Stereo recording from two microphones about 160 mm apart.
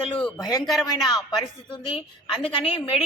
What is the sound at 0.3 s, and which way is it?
Speech, 25° left (ahead or behind).